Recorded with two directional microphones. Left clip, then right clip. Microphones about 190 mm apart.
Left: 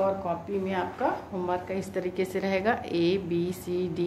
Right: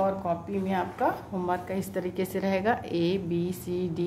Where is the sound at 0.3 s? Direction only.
30° right (ahead or behind).